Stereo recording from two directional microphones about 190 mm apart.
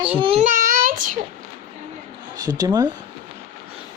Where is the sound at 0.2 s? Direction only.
30° right (ahead or behind).